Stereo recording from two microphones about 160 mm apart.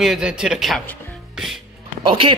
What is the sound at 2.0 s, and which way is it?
Speech, 35° right (ahead or behind).